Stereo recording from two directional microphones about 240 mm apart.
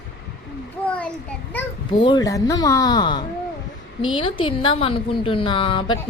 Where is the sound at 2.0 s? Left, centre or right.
Centre.